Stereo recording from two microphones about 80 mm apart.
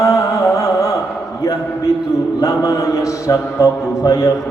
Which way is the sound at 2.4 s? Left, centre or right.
Left.